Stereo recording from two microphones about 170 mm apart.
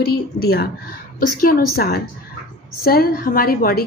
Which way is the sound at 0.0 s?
65° left (ahead or behind).